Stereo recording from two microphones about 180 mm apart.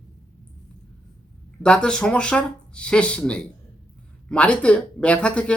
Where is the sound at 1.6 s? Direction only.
5° left (ahead or behind).